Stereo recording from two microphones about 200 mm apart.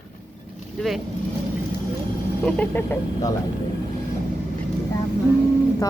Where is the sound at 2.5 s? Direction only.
10° left (ahead or behind).